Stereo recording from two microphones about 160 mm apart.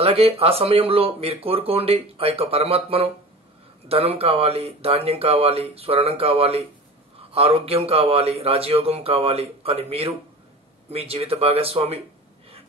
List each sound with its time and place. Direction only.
0.0 s speech: 40° right (ahead or behind)